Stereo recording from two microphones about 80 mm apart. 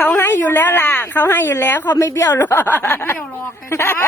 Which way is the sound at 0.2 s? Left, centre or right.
Left.